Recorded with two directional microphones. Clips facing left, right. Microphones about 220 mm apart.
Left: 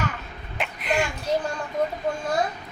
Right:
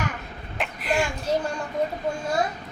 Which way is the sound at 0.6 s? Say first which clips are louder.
Even; centre (ahead or behind).